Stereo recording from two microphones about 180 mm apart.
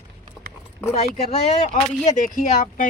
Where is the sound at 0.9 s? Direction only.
35° left (ahead or behind).